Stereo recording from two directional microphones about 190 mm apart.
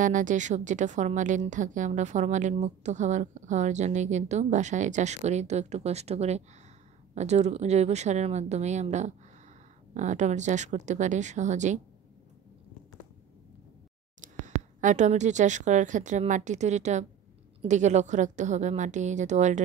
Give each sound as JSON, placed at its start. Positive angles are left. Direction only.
{"t": 0.0, "sound": "a woman's voice", "side_deg": -40}
{"t": 14.2, "sound": "a woman's voice", "side_deg": -40}